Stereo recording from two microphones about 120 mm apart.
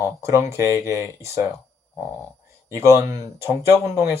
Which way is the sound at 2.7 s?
25° right (ahead or behind).